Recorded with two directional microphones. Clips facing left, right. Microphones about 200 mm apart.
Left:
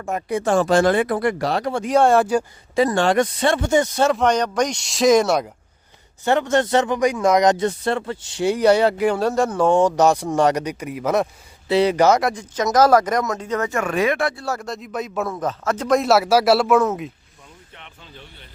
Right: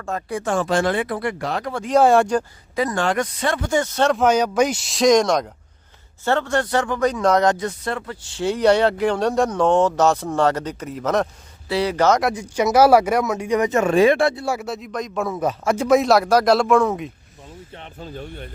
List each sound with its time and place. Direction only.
0.0 s speech: 15° left (ahead or behind)
0.4 s speech: 40° left (ahead or behind)
2.0 s speech: centre (ahead or behind)
2.7 s speech: 30° left (ahead or behind); by 4.1 s 15° left (ahead or behind)
4.1 s speech: 5° right (ahead or behind); by 7.5 s 10° left (ahead or behind)
7.5 s speech: 30° left (ahead or behind); by 11.3 s 10° left (ahead or behind)
11.7 s speech: 20° left (ahead or behind)
12.2 s speech: 10° right (ahead or behind); by 14.4 s 25° right (ahead or behind)
14.4 s speech: 10° right (ahead or behind)
15.4 s speech: 10° right (ahead or behind)
17.7 s speech: 40° right (ahead or behind)